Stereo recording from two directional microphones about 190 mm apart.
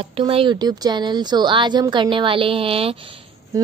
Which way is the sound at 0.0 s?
30° right (ahead or behind).